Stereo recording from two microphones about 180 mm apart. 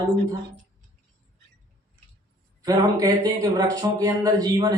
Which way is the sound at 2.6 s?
20° right (ahead or behind).